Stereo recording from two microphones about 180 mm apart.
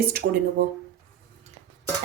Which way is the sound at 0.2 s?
80° right.